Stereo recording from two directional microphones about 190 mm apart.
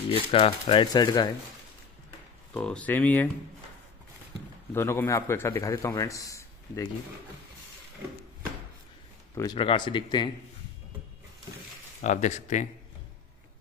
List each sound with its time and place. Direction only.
0.1 s speech: 30° left (ahead or behind)
2.5 s a man's voice: 5° left (ahead or behind)
4.7 s a man's voice: 15° left (ahead or behind)
9.3 s speech: 20° left (ahead or behind)
12.0 s speech: 40° left (ahead or behind)